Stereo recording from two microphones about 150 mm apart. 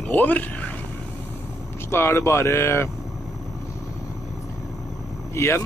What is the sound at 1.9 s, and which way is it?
Speech, 15° left (ahead or behind).